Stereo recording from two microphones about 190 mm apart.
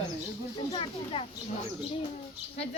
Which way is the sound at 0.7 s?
30° left (ahead or behind).